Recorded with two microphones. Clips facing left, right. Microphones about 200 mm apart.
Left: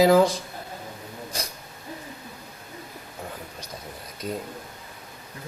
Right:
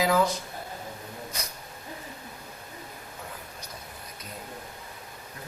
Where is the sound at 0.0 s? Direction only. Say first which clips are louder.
Left 7 dB; 35° left (ahead or behind).